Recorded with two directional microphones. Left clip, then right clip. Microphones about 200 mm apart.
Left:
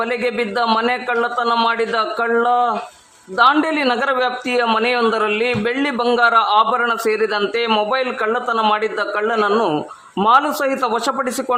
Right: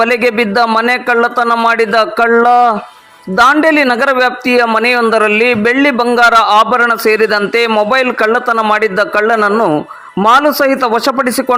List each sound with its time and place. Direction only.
0.0 s a man's voice: 30° right (ahead or behind); by 10.2 s 10° right (ahead or behind)
10.2 s a man's voice: 25° right (ahead or behind)